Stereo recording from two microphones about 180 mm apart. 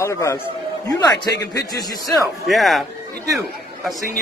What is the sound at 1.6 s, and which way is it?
Speech, 20° left (ahead or behind).